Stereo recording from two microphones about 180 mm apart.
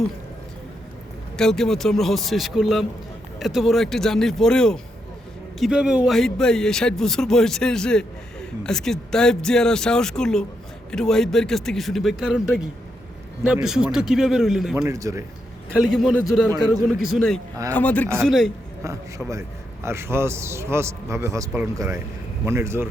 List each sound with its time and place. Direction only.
1.4 s a man's voice: 5° left (ahead or behind)
14.8 s a man's voice: 15° right (ahead or behind)
15.8 s a man's voice: centre (ahead or behind)
18.8 s a man's voice: 15° right (ahead or behind)